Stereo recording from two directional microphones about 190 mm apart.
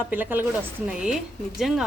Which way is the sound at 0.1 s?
10° right (ahead or behind).